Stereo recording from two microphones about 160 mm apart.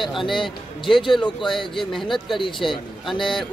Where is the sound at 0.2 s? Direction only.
30° left (ahead or behind).